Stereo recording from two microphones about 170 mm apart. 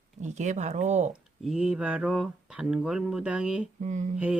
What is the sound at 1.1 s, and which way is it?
Speech, 5° right (ahead or behind).